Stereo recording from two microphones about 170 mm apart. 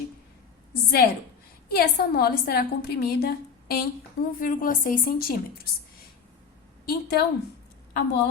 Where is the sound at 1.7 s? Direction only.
65° left (ahead or behind).